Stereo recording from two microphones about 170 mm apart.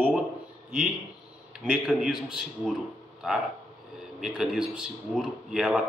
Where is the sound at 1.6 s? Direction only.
5° right (ahead or behind).